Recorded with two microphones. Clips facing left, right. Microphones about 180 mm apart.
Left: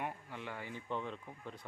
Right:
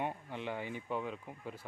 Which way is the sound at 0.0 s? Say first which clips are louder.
Right 4 dB; 20° right (ahead or behind).